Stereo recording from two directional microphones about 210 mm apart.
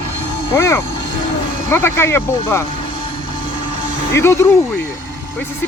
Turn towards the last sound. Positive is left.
turn(degrees=15)  # may be behind; listen again after turning